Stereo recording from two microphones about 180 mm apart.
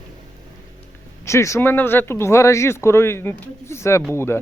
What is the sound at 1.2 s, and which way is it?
Speech, 15° left (ahead or behind).